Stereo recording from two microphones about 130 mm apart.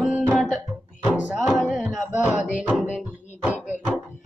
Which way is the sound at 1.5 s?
Centre (ahead or behind).